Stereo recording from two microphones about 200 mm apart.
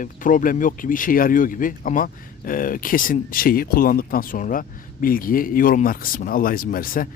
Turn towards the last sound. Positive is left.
turn(degrees=45)  # may be behind; listen again after turning